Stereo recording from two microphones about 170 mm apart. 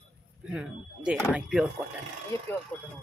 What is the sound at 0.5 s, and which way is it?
Speech, 5° right (ahead or behind).